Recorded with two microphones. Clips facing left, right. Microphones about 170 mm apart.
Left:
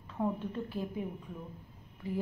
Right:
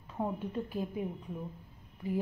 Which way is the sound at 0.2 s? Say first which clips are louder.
Left 1 dB; 15° right (ahead or behind).